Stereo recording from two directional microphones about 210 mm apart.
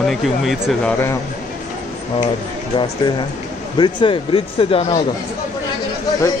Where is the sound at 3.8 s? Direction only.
20° left (ahead or behind).